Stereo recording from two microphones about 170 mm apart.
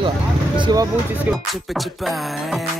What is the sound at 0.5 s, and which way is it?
Speech, 25° right (ahead or behind).